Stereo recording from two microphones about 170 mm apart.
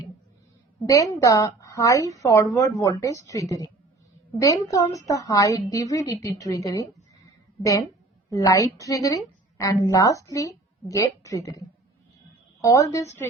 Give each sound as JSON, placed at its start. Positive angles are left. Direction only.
{"t": 0.9, "sound": "a woman's voice", "side_deg": 20}
{"t": 8.3, "sound": "a woman's voice", "side_deg": 20}
{"t": 12.6, "sound": "a woman's voice", "side_deg": 20}